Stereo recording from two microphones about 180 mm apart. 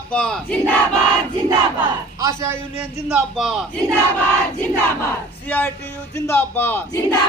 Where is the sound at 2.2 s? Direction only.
15° right (ahead or behind).